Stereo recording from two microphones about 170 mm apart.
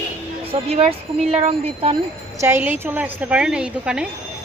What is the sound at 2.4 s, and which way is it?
Speech, 10° right (ahead or behind).